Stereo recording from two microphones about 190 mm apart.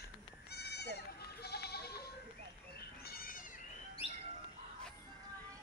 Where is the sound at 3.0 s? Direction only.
50° left (ahead or behind).